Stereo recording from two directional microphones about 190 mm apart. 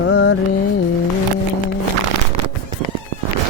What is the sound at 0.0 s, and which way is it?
Music, 65° left (ahead or behind).